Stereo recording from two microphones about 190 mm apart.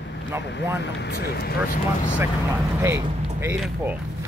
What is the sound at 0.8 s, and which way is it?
Speech, 60° left (ahead or behind).